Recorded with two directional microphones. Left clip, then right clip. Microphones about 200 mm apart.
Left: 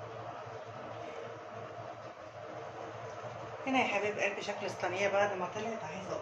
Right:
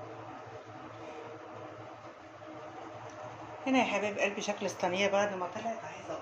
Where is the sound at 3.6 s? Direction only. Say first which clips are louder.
Right 2 dB; 40° right (ahead or behind).